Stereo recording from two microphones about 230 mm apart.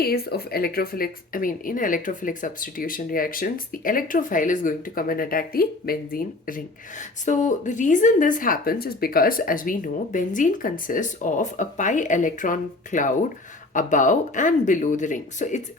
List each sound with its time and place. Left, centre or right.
0.0 s speech: left